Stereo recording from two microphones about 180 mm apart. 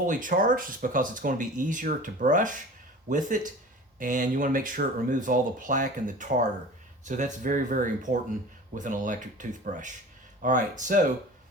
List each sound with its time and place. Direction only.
0.0 s speech: 45° right (ahead or behind)